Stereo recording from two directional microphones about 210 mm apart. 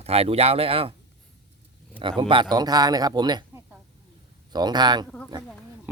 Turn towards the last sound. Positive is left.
turn(degrees=-5)  # may be behind; listen again after turning